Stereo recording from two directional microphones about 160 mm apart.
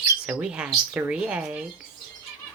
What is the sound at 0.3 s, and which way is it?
Speech, 5° right (ahead or behind).